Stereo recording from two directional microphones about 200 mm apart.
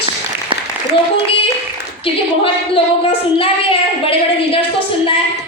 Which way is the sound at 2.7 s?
30° left (ahead or behind).